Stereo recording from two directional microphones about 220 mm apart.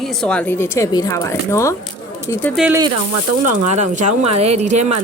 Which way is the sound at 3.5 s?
30° right (ahead or behind).